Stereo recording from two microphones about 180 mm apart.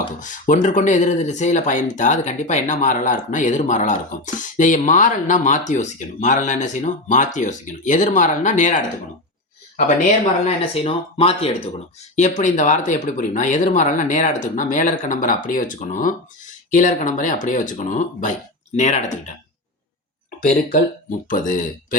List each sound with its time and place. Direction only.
0.2 s speech: 45° left (ahead or behind)
10.4 s speech: 35° left (ahead or behind)
12.1 s speech: 40° left (ahead or behind)
21.2 s speech: 45° left (ahead or behind)